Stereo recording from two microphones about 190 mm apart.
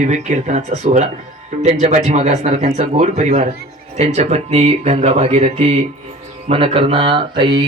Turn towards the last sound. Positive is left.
turn(degrees=-25)  # may be behind; listen again after turning